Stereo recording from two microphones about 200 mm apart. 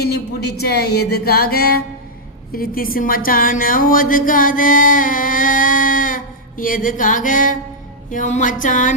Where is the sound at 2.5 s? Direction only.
45° left (ahead or behind).